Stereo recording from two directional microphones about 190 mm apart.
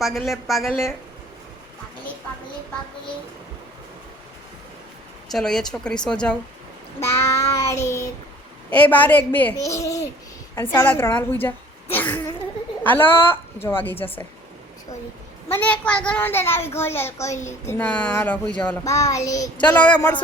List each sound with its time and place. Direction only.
0.0 s speech: centre (ahead or behind)
5.3 s speech: 5° left (ahead or behind)
7.0 s child singing: 15° left (ahead or behind)
8.7 s a child's voice: 10° left (ahead or behind)
15.4 s a child's voice: 10° left (ahead or behind)